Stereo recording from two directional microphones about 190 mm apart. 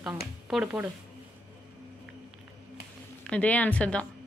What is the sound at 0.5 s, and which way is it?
Speech, 5° right (ahead or behind).